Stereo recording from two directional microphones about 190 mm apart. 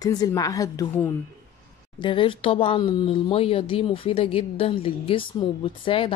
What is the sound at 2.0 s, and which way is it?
Speech, 25° left (ahead or behind).